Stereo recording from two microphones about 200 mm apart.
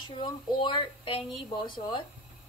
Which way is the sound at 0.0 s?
25° left (ahead or behind).